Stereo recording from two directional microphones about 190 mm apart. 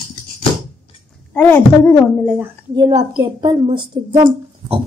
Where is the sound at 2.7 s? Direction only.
20° right (ahead or behind).